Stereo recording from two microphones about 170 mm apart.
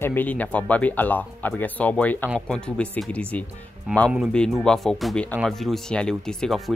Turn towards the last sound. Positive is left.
turn(degrees=0)  # may be behind; listen again after turning